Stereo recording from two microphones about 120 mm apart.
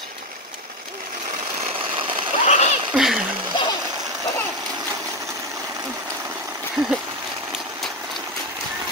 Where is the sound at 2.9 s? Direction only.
5° right (ahead or behind).